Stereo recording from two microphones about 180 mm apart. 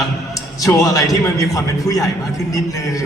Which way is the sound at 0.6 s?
20° left (ahead or behind).